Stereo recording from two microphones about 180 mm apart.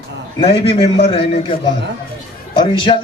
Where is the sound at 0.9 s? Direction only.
30° left (ahead or behind).